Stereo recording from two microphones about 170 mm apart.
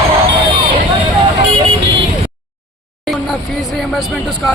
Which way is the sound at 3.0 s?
Centre (ahead or behind).